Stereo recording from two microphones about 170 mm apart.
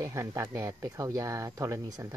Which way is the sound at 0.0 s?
15° right (ahead or behind).